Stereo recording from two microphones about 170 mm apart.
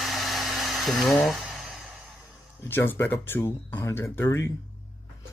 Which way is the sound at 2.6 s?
10° left (ahead or behind).